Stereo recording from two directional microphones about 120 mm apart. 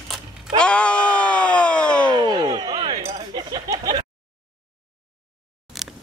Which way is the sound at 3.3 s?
35° right (ahead or behind).